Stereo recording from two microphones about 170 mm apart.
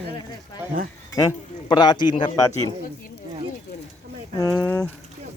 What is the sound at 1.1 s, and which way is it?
Speech, 20° left (ahead or behind).